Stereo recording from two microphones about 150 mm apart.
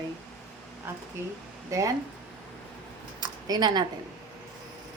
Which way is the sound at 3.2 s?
30° right (ahead or behind).